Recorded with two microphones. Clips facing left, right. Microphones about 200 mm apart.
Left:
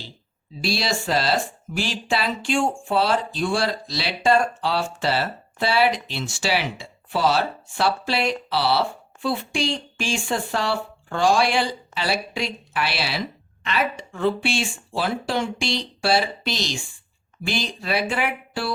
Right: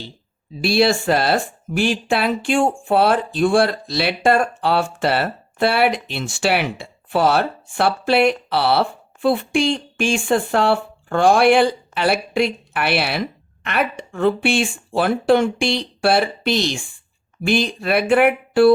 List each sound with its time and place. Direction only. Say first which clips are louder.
0.6 s speech: right 9 dB; 55° right (ahead or behind)